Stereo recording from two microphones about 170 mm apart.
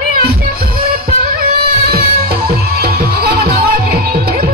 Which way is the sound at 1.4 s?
65° right (ahead or behind).